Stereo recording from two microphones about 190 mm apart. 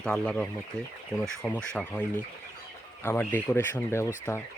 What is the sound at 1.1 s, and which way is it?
Speech, 15° left (ahead or behind).